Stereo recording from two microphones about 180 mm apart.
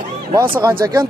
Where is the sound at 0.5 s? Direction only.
10° right (ahead or behind).